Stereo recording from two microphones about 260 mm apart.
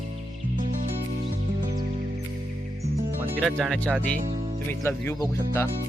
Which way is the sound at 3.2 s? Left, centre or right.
Centre.